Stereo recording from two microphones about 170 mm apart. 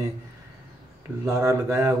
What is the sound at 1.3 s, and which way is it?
Speech, 15° right (ahead or behind).